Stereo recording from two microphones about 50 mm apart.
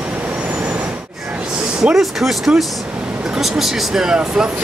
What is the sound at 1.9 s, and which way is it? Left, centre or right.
Speech, centre.